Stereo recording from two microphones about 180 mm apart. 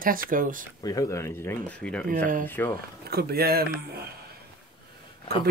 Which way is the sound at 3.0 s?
60° right (ahead or behind).